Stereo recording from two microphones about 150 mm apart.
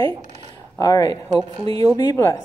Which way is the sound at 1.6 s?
30° left (ahead or behind).